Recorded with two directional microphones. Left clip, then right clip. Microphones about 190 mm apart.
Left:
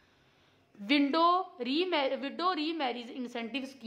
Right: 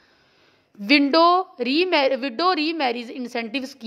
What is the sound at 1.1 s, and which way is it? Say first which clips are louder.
A woman's voice: right 10 dB; 35° right (ahead or behind).